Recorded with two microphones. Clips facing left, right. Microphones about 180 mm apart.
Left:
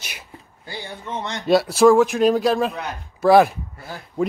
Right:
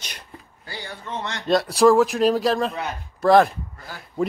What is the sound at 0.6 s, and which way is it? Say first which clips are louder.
Speech: left 2 dB; 20° left (ahead or behind).